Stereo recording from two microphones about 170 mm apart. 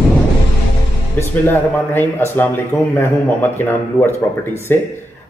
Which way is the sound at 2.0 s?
15° left (ahead or behind).